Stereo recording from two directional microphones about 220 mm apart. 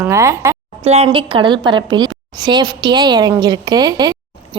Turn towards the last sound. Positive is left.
turn(degrees=-20)  # may be behind; listen again after turning